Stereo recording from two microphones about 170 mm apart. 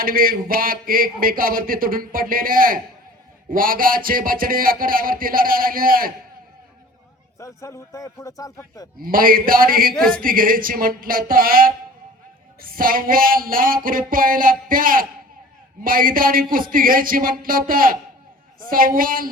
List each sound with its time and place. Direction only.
0.0 s speech: 55° right (ahead or behind)
7.3 s a man's voice: 15° left (ahead or behind)
9.0 s speech: 55° right (ahead or behind)
9.9 s speech: 5° left (ahead or behind)
10.2 s speech: 55° right (ahead or behind)